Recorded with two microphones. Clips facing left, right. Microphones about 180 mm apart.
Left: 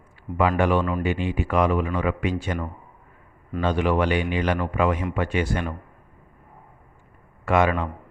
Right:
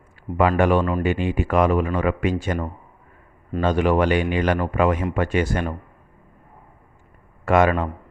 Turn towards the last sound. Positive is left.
turn(degrees=-45)  # may be behind; listen again after turning